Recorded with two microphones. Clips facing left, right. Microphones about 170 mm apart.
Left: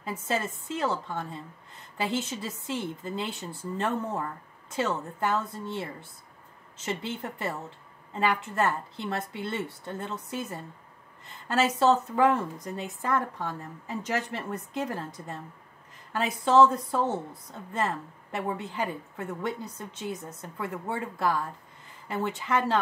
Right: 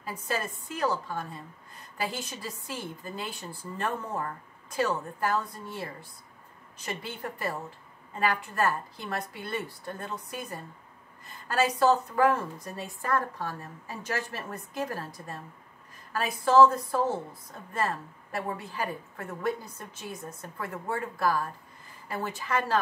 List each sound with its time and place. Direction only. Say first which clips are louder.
0.0 s a woman's voice: left 2 dB; 25° left (ahead or behind)